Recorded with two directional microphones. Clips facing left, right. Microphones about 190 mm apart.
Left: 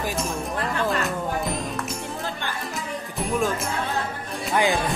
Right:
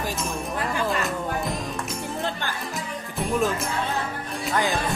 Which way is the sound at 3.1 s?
Centre (ahead or behind).